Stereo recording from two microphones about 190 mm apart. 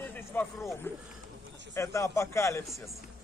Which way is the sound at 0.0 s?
10° left (ahead or behind).